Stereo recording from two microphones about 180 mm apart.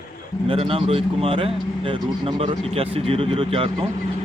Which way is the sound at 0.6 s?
30° right (ahead or behind).